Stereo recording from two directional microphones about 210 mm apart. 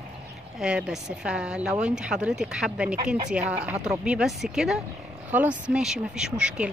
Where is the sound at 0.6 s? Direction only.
5° right (ahead or behind).